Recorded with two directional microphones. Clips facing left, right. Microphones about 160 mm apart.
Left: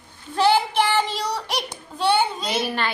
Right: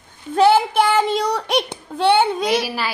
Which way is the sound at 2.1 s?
60° right (ahead or behind).